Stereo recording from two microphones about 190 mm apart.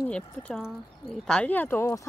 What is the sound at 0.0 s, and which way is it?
Speech, 5° left (ahead or behind).